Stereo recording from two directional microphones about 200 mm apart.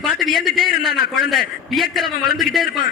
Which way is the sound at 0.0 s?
Centre (ahead or behind).